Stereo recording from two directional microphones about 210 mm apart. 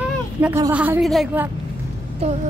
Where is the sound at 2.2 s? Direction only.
30° right (ahead or behind).